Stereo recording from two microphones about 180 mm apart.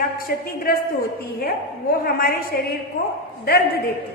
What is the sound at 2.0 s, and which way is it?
Speech, 55° left (ahead or behind).